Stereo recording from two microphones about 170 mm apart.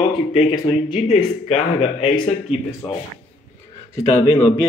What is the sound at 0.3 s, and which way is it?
Speech, 35° left (ahead or behind).